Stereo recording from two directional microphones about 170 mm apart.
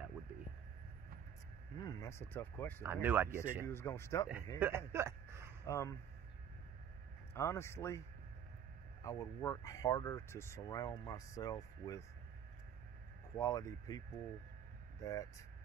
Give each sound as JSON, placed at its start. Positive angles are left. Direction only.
{"t": 1.8, "sound": "speech", "side_deg": 20}
{"t": 2.8, "sound": "speech", "side_deg": -15}
{"t": 3.6, "sound": "speech", "side_deg": 15}
{"t": 4.6, "sound": "speech", "side_deg": -15}
{"t": 5.7, "sound": "speech", "side_deg": 20}
{"t": 7.3, "sound": "speech", "side_deg": 15}
{"t": 9.0, "sound": "speech", "side_deg": 20}
{"t": 13.4, "sound": "speech", "side_deg": 20}